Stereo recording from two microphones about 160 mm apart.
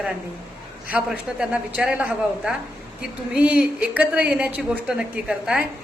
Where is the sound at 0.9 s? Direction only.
10° right (ahead or behind).